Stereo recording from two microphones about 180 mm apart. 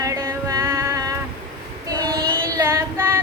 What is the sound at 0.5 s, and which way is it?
Music, 15° right (ahead or behind).